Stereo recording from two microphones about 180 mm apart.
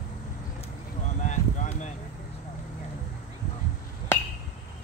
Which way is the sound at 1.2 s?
40° left (ahead or behind).